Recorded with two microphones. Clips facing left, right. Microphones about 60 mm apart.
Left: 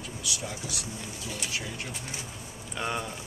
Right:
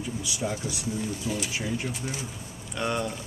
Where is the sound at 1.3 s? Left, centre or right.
Centre.